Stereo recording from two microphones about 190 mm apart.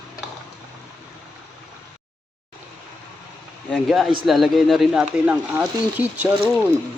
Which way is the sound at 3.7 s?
Centre (ahead or behind).